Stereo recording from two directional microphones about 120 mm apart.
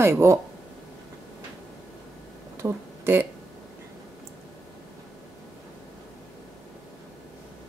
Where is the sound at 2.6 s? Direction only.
20° right (ahead or behind).